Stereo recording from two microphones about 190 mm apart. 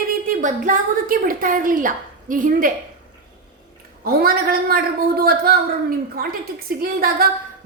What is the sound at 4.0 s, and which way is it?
A woman's voice, 50° right (ahead or behind).